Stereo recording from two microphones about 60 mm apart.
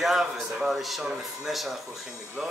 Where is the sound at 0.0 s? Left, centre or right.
Centre.